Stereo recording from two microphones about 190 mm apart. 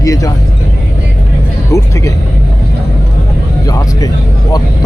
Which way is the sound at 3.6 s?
20° left (ahead or behind).